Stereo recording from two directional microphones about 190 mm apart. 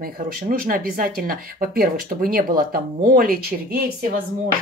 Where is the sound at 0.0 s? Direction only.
50° right (ahead or behind).